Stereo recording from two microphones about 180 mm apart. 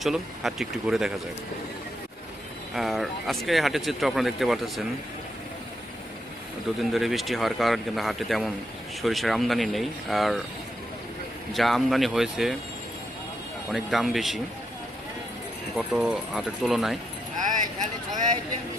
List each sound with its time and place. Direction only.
0.0 s speech: centre (ahead or behind)
2.7 s speech: centre (ahead or behind)
6.7 s speech: centre (ahead or behind)
11.5 s speech: centre (ahead or behind)
13.7 s speech: centre (ahead or behind)
15.7 s speech: 5° right (ahead or behind)
17.4 s speech: 45° right (ahead or behind)